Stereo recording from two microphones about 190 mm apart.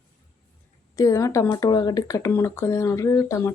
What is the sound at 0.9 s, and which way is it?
Speech, 15° left (ahead or behind).